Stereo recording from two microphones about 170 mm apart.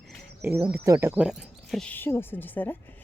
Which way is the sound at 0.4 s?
15° right (ahead or behind).